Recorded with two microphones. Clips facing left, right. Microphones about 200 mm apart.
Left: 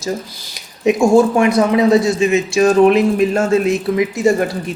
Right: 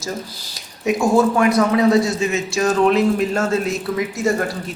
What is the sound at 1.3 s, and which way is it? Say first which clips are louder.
Speech: left 3 dB; 20° left (ahead or behind).